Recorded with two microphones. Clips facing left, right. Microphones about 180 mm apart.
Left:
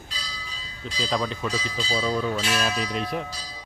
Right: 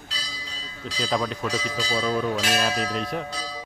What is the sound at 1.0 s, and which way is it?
Speech, centre (ahead or behind).